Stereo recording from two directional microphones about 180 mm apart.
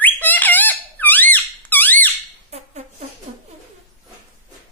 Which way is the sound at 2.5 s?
35° right (ahead or behind).